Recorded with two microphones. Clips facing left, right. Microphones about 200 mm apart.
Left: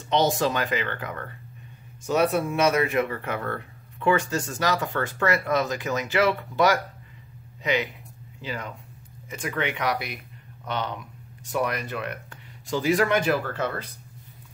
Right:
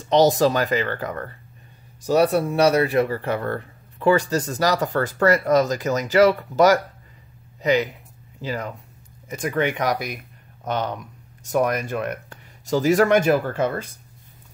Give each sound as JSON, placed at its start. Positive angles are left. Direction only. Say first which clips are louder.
{"t": 0.1, "sound": "speech", "louder": "right 6 dB", "side_deg": -40}